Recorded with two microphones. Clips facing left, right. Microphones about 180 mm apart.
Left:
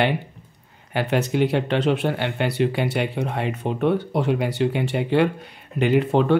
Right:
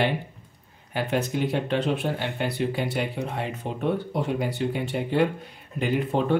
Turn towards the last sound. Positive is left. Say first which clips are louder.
# left 5 dB
turn(degrees=75)  # may be behind; listen again after turning